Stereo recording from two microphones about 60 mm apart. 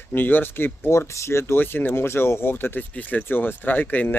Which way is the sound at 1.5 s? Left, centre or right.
Left.